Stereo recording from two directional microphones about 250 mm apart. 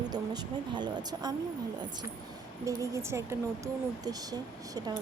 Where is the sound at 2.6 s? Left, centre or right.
Centre.